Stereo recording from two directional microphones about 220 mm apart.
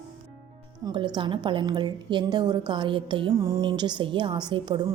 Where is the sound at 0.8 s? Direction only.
20° right (ahead or behind).